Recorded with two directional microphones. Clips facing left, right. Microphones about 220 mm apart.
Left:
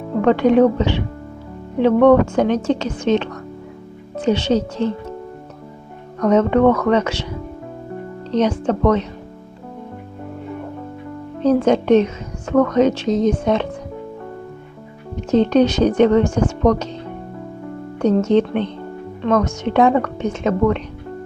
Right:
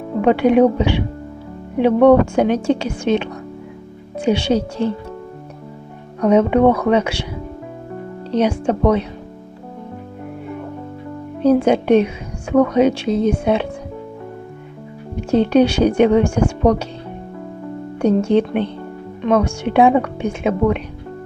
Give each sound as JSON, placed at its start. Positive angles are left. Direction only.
{"t": 0.2, "sound": "a woman's voice", "side_deg": -10}
{"t": 6.1, "sound": "a woman's voice", "side_deg": -10}
{"t": 8.3, "sound": "a woman's voice", "side_deg": -10}
{"t": 11.3, "sound": "a woman's voice", "side_deg": -10}
{"t": 15.1, "sound": "a woman's voice", "side_deg": -10}
{"t": 18.0, "sound": "a woman's voice", "side_deg": -10}